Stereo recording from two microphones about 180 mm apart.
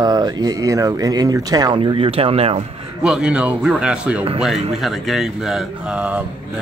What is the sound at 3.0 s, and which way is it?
Speech, 5° right (ahead or behind).